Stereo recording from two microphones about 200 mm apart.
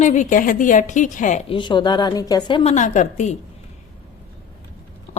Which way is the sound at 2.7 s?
40° left (ahead or behind).